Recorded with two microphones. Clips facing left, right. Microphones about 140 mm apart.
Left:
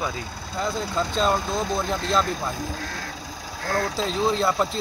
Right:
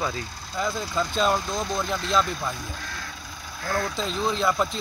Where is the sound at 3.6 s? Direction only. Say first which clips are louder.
Left 2 dB; 35° left (ahead or behind).